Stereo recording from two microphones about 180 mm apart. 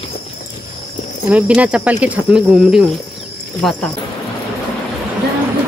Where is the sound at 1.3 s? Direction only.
5° right (ahead or behind).